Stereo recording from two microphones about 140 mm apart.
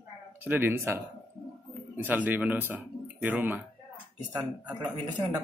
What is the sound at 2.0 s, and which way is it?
Speech, 10° right (ahead or behind).